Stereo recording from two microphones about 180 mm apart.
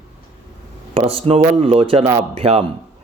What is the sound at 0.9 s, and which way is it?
A man's voice, 30° right (ahead or behind).